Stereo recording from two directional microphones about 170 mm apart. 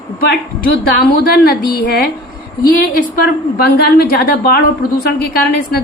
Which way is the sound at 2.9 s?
60° left (ahead or behind).